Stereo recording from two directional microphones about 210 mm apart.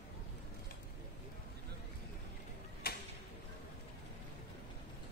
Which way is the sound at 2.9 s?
45° left (ahead or behind).